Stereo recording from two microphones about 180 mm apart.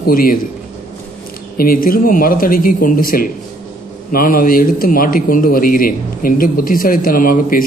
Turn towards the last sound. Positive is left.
turn(degrees=50)  # may be behind; listen again after turning